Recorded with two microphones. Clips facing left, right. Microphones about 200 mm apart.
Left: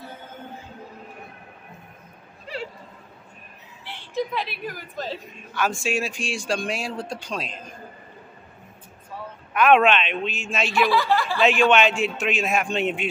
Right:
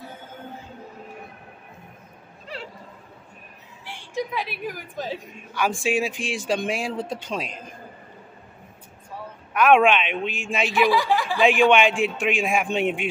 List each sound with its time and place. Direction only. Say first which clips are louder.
3.8 s a woman's voice: left 2 dB; 15° right (ahead or behind)
9.5 s a woman's voice: even; 10° right (ahead or behind)